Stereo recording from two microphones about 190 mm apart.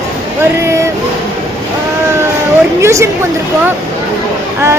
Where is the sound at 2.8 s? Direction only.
15° right (ahead or behind).